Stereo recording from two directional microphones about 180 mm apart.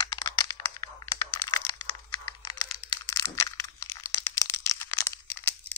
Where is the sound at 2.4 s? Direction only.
20° left (ahead or behind).